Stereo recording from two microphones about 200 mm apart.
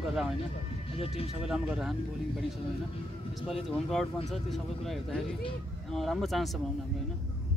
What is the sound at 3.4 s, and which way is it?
Speech, centre (ahead or behind).